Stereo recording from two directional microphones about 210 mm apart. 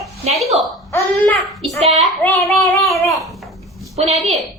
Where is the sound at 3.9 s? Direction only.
30° right (ahead or behind).